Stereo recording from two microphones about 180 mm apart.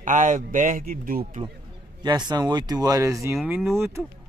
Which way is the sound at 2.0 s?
25° right (ahead or behind).